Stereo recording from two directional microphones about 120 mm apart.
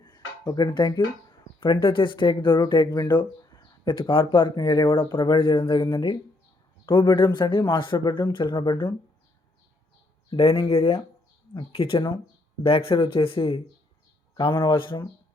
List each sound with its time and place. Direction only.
0.0 s a sound: 35° left (ahead or behind)
1.5 s speech: 45° left (ahead or behind)
10.3 s speech: 50° left (ahead or behind)